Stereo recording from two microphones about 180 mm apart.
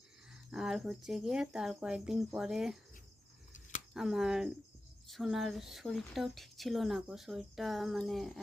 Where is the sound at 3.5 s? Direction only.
45° left (ahead or behind).